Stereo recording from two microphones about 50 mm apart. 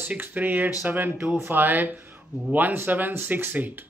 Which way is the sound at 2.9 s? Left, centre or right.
Right.